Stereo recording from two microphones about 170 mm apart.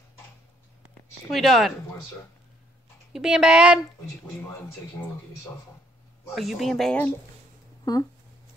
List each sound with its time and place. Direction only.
1.3 s speech: centre (ahead or behind)
3.1 s speech: centre (ahead or behind)
6.3 s speech: centre (ahead or behind)
7.8 s speech: 20° left (ahead or behind)